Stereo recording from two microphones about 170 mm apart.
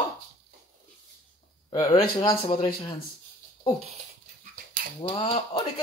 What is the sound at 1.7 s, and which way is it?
Speech, 25° left (ahead or behind).